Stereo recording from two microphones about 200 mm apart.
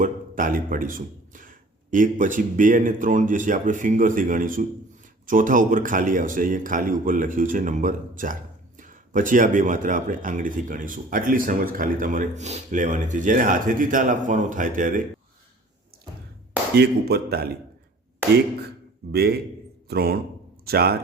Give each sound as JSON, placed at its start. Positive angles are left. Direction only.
{"t": 0.0, "sound": "speech", "side_deg": -40}
{"t": 16.7, "sound": "a man's voice", "side_deg": -55}
{"t": 19.1, "sound": "a man's voice", "side_deg": -55}